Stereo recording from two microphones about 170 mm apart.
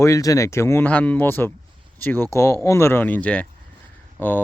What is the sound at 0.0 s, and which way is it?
Speech, 20° left (ahead or behind).